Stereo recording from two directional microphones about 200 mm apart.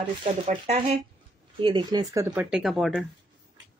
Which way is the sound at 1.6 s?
20° right (ahead or behind).